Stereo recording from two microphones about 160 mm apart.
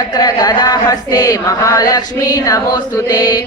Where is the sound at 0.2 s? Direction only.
25° left (ahead or behind).